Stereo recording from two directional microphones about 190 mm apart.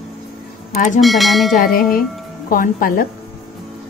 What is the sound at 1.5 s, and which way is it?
Speech, 45° left (ahead or behind).